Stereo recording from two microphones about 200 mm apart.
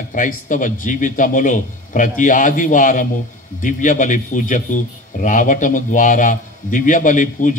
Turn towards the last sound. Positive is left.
turn(degrees=40)  # may be behind; listen again after turning